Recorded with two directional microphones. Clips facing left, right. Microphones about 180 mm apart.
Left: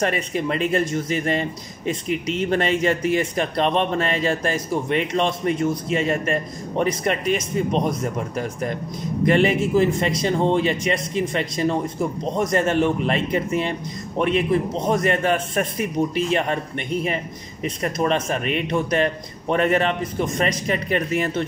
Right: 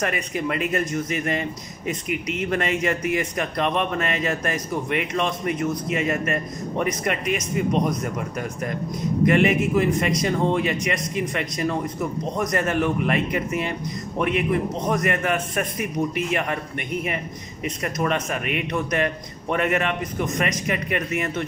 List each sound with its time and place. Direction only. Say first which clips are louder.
0.0 s a man's voice: left 3 dB; 30° left (ahead or behind)
17.6 s a man's voice: left 3 dB; 30° left (ahead or behind)